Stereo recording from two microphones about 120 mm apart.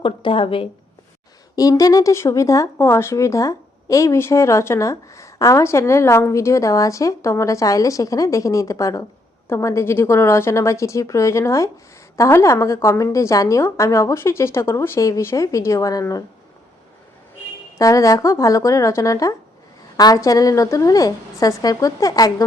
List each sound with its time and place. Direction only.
0.0 s speech: 45° left (ahead or behind)
1.5 s speech: 30° left (ahead or behind)
17.7 s speech: 30° left (ahead or behind)